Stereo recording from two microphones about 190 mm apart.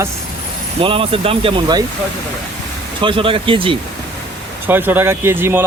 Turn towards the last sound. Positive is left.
turn(degrees=-10)  # may be behind; listen again after turning